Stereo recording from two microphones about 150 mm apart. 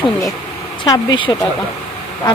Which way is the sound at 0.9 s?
30° left (ahead or behind).